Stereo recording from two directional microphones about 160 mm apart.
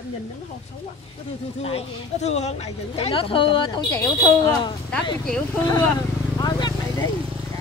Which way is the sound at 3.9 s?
20° left (ahead or behind).